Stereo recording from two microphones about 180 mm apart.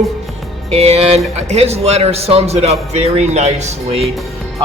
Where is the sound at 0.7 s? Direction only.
35° right (ahead or behind).